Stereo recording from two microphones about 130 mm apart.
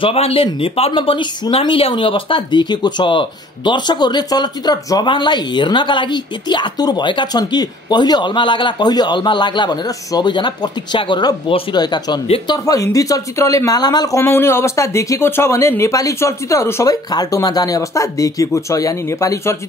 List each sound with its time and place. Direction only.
0.0 s speech: 50° left (ahead or behind); by 19.5 s 25° left (ahead or behind)